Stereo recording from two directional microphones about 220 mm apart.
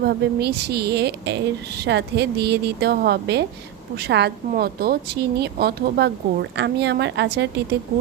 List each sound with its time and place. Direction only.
0.0 s a woman's voice: 45° right (ahead or behind)